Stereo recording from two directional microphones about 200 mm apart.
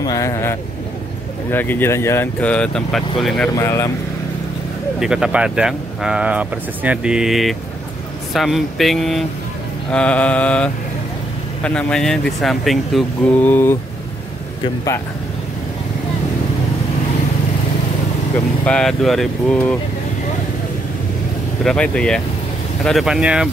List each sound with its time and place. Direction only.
0.0 s speech: 15° left (ahead or behind); by 3.4 s centre (ahead or behind)
3.5 s speech: 15° left (ahead or behind)
5.0 s speech: 5° right (ahead or behind)
18.7 s speech: 5° left (ahead or behind)
21.6 s speech: 5° left (ahead or behind)